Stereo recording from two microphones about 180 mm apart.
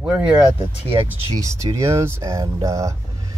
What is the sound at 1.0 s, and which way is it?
Speech, 15° right (ahead or behind).